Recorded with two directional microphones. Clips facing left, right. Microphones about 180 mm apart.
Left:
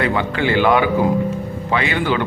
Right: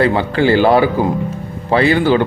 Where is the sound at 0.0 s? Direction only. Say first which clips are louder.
Right 5 dB; 35° right (ahead or behind).